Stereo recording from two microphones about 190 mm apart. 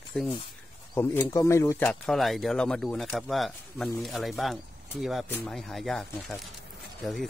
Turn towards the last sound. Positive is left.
turn(degrees=0)  # may be behind; listen again after turning